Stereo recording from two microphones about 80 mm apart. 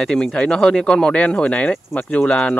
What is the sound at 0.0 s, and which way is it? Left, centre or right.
Speech, centre.